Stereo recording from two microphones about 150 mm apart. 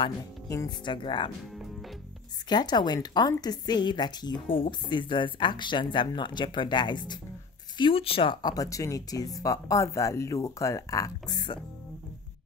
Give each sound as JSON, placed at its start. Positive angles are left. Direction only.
{"t": 0.5, "sound": "speech", "side_deg": 25}
{"t": 2.5, "sound": "speech", "side_deg": 30}